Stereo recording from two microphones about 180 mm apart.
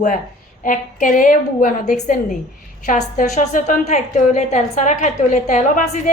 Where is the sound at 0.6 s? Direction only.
45° left (ahead or behind).